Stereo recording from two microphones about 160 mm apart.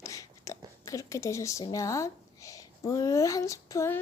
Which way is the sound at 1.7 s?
20° left (ahead or behind).